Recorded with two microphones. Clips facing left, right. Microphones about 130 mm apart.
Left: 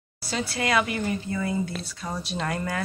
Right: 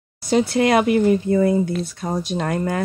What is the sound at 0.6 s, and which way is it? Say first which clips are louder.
Speech: right 7 dB; 45° right (ahead or behind).